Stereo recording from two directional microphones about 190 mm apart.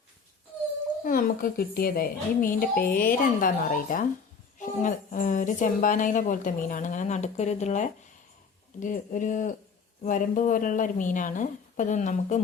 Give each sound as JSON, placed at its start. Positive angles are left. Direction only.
{"t": 1.0, "sound": "a woman's voice", "side_deg": 50}